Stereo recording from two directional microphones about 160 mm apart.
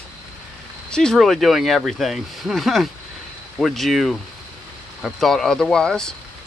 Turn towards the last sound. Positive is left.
turn(degrees=5)  # may be behind; listen again after turning